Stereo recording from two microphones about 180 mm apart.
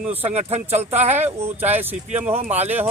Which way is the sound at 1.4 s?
10° right (ahead or behind).